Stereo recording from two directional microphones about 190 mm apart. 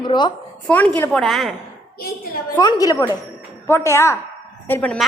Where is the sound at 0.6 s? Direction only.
10° left (ahead or behind).